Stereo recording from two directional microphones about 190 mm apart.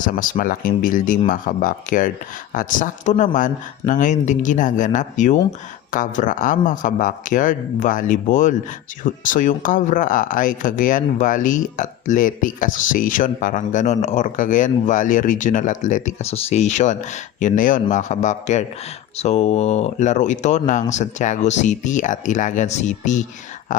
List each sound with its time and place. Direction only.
0.0 s speech: 45° left (ahead or behind)